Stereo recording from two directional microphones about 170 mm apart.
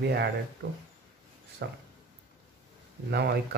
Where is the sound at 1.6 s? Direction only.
80° right.